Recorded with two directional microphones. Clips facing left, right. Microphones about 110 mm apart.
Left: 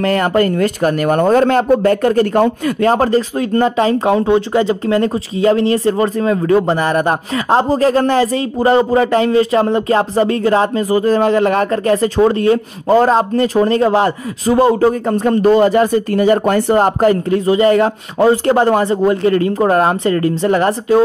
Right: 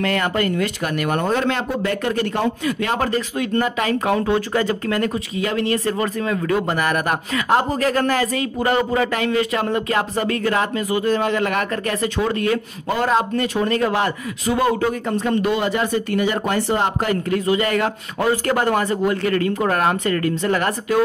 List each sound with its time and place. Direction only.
0.0 s speech: 40° left (ahead or behind)